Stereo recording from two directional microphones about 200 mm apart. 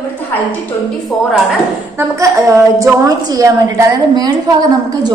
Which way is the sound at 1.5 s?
15° right (ahead or behind).